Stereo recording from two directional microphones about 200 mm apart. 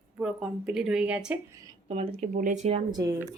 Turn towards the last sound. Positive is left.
turn(degrees=-20)  # may be behind; listen again after turning